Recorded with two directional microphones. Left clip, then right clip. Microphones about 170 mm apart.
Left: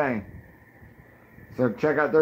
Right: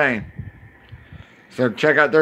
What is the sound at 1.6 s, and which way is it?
Speech, 25° right (ahead or behind).